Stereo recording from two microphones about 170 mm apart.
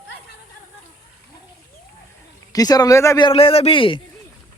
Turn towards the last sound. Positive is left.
turn(degrees=30)  # may be behind; listen again after turning